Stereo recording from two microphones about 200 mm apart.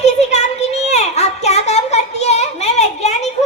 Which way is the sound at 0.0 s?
35° left (ahead or behind).